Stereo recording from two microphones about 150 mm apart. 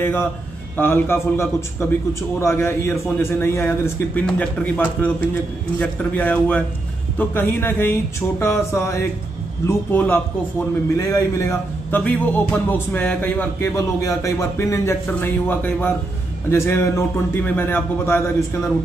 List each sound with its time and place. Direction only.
0.7 s speech: 15° left (ahead or behind)